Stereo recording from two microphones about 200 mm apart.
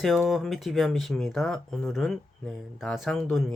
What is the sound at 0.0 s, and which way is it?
Speech, centre (ahead or behind).